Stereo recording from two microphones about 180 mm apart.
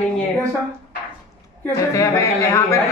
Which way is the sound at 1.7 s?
15° left (ahead or behind).